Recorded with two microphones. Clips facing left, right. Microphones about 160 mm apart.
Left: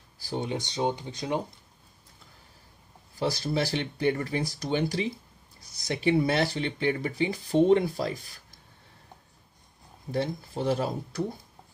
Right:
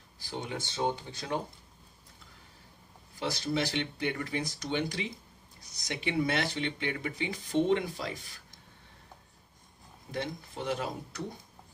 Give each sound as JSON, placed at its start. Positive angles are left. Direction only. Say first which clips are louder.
{"t": 0.2, "sound": "speech", "louder": "left 6 dB", "side_deg": 35}
{"t": 0.5, "sound": "speech", "louder": "left 2 dB", "side_deg": 15}
{"t": 3.2, "sound": "speech", "louder": "left 4 dB", "side_deg": 35}
{"t": 10.1, "sound": "speech", "louder": "left 6 dB", "side_deg": 35}